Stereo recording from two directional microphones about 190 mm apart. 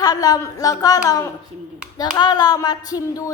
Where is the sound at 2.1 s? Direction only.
20° left (ahead or behind).